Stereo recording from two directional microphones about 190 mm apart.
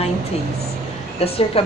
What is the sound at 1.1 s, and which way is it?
Speech, 30° left (ahead or behind).